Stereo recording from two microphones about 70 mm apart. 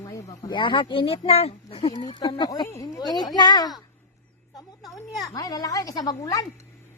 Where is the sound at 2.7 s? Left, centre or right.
Left.